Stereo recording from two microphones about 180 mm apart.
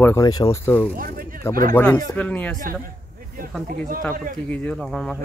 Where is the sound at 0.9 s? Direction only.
50° right (ahead or behind).